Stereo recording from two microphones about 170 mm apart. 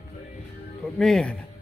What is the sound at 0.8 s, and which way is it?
Speech, 5° left (ahead or behind).